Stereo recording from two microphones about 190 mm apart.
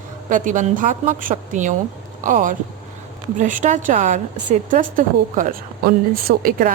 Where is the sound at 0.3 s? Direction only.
45° right (ahead or behind).